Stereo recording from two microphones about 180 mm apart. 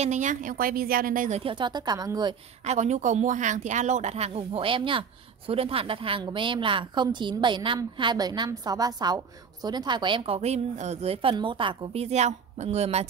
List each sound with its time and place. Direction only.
0.0 s a woman's voice: 40° right (ahead or behind)
1.4 s a woman's voice: 25° right (ahead or behind)
2.6 s a woman's voice: 40° right (ahead or behind)